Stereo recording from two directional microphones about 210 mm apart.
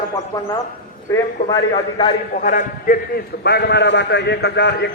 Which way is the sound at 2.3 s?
35° left (ahead or behind).